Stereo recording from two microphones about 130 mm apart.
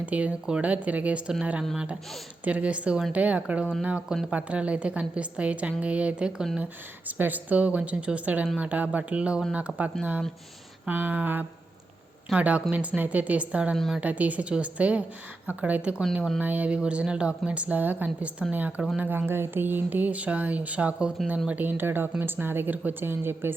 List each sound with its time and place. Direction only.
0.0 s speech: 10° right (ahead or behind)
13.7 s speech: centre (ahead or behind)
14.0 s speech: 10° right (ahead or behind)
16.4 s speech: 10° right (ahead or behind)